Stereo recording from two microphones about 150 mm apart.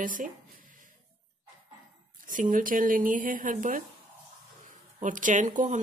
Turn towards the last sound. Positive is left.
turn(degrees=-60)  # may be behind; listen again after turning